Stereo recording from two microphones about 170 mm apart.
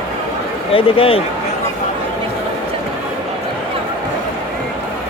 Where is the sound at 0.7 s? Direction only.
30° left (ahead or behind).